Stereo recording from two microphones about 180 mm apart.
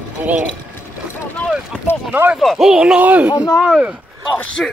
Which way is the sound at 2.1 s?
10° right (ahead or behind).